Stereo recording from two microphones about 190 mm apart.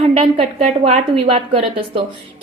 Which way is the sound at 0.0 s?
30° right (ahead or behind).